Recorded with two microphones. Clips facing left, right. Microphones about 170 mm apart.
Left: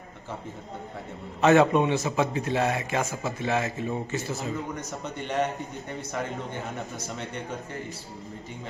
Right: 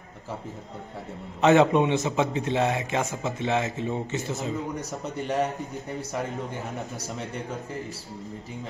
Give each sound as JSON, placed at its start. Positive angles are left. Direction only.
{"t": 1.4, "sound": "a man's voice", "side_deg": -20}
{"t": 5.2, "sound": "a man's voice", "side_deg": 0}